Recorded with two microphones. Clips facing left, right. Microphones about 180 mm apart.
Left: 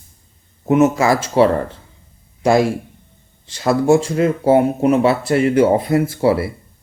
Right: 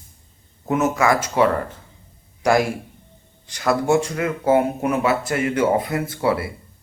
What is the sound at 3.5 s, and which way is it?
Speech, 25° left (ahead or behind).